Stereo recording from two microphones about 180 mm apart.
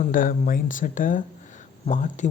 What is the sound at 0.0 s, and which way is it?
Speech, 50° left (ahead or behind).